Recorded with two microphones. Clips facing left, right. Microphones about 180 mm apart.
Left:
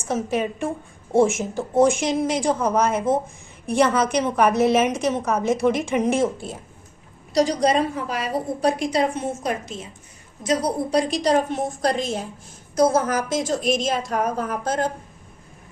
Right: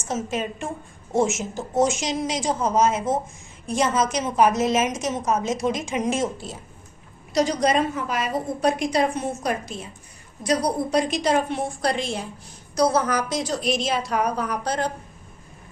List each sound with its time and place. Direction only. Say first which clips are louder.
0.0 s a woman's voice: left 3 dB; 60° left (ahead or behind)
7.3 s a woman's voice: left 2 dB; 35° left (ahead or behind)